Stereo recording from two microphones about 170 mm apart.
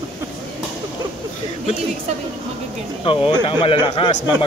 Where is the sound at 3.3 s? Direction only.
25° left (ahead or behind).